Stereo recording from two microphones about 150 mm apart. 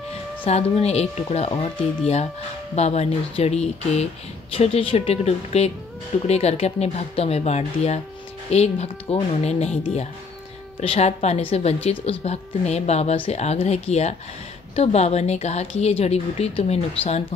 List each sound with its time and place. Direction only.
0.5 s a woman's voice: 45° left (ahead or behind)